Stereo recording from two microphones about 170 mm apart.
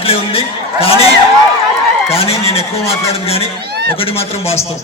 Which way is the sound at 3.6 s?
75° right (ahead or behind).